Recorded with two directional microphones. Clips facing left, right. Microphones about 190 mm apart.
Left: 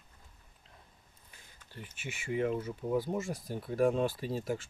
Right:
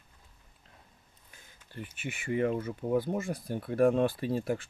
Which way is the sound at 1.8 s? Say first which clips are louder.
Right 4 dB; 55° right (ahead or behind).